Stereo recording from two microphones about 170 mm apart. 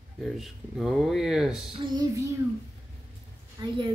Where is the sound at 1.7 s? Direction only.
30° right (ahead or behind).